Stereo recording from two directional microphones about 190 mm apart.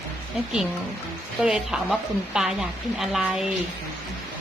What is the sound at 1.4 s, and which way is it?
Child singing, 5° right (ahead or behind).